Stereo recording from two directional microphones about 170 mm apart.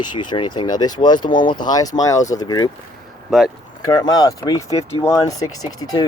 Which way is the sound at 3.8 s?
25° left (ahead or behind).